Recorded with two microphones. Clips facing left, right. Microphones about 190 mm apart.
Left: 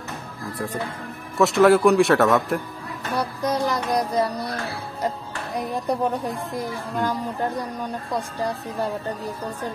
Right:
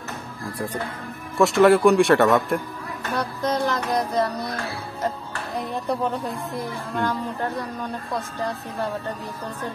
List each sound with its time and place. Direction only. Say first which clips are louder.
1.4 s speech: even; centre (ahead or behind)
3.2 s speech: even; 10° left (ahead or behind)
7.0 s speech: left 1 dB; 10° left (ahead or behind)